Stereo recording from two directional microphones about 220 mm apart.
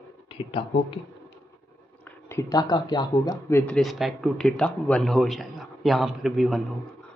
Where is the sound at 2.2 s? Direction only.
15° left (ahead or behind).